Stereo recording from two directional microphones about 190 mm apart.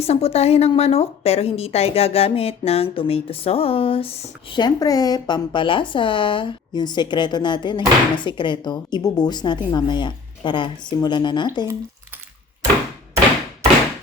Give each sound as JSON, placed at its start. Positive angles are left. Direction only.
{"t": 0.0, "sound": "a woman's voice", "side_deg": 30}